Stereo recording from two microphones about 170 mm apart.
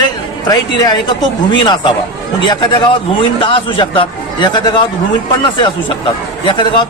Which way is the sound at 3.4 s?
30° left (ahead or behind).